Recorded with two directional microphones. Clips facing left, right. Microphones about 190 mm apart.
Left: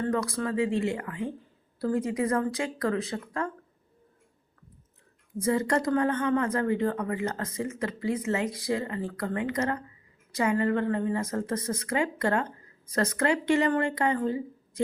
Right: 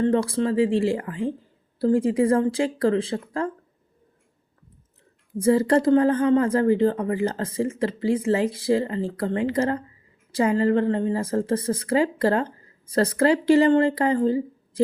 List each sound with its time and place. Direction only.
0.0 s speech: 30° right (ahead or behind)
5.4 s speech: 30° right (ahead or behind)